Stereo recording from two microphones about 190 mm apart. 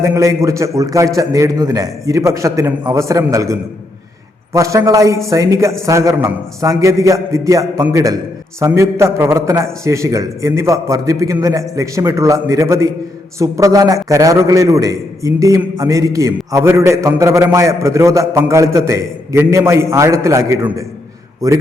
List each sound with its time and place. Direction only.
0.0 s a man's voice: 15° right (ahead or behind)